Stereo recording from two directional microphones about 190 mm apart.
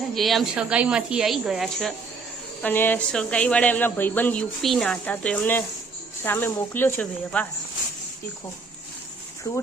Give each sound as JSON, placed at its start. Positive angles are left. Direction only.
{"t": 0.1, "sound": "speech", "side_deg": 0}
{"t": 2.6, "sound": "speech", "side_deg": 10}